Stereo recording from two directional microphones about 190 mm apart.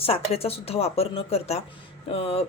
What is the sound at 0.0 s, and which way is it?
Speech, 30° left (ahead or behind).